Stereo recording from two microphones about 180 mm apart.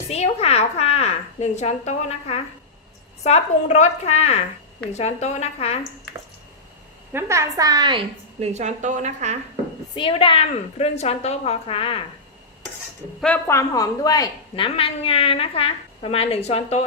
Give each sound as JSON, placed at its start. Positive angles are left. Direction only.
{"t": 0.1, "sound": "a woman's voice", "side_deg": 35}
{"t": 7.1, "sound": "a woman's voice", "side_deg": -15}
{"t": 9.9, "sound": "a woman's voice", "side_deg": 30}
{"t": 13.2, "sound": "a woman's voice", "side_deg": 10}